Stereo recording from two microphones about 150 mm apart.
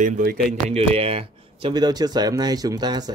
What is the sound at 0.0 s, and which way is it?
Speech, 80° right.